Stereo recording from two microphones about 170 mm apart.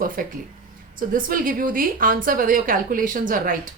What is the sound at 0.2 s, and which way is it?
A woman's voice, 55° right (ahead or behind).